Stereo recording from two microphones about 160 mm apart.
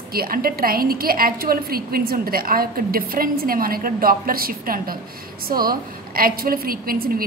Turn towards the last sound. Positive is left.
turn(degrees=-65)  # may be behind; listen again after turning